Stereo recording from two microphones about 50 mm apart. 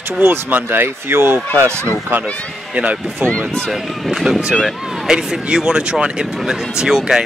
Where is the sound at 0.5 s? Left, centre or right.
Right.